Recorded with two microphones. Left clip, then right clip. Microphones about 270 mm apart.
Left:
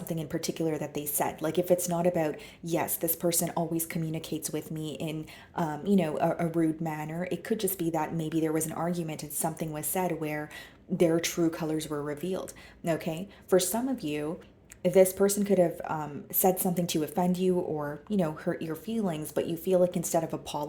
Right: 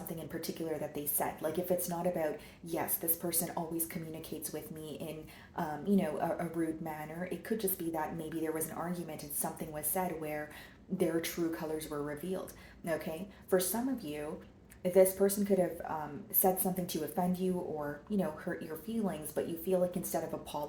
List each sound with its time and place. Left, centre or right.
0.3 s speech: left